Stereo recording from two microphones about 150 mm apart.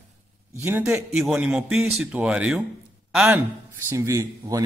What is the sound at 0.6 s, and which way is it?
A man's voice, 15° right (ahead or behind).